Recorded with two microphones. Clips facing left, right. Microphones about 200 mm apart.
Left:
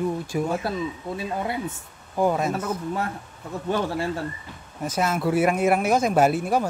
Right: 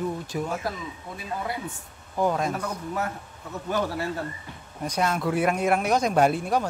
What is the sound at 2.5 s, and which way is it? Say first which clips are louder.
A man's voice: left 3 dB; 25° left (ahead or behind).